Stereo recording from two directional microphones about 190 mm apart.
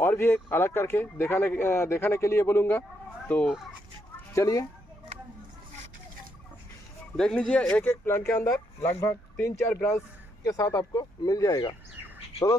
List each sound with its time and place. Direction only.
0.0 s speech: 10° left (ahead or behind)
3.4 s speech: centre (ahead or behind)
4.3 s speech: 15° left (ahead or behind)
7.2 s speech: 5° left (ahead or behind)